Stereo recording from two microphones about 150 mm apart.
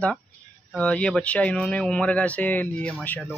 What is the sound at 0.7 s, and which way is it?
Speech, 10° left (ahead or behind).